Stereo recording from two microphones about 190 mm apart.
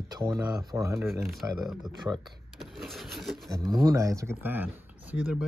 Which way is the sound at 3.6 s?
20° right (ahead or behind).